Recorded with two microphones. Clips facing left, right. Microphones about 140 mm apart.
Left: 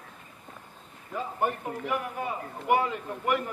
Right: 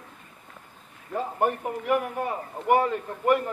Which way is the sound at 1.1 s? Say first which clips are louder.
Right 4 dB; 55° right (ahead or behind).